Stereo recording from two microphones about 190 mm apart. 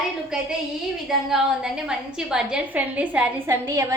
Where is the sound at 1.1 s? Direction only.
5° right (ahead or behind).